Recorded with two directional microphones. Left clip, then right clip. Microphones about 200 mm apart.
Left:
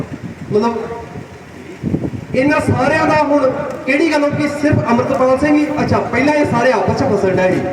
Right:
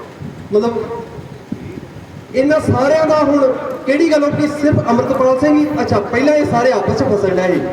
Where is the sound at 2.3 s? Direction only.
25° left (ahead or behind).